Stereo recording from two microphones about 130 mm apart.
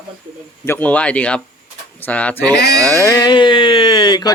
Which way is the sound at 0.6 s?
15° left (ahead or behind).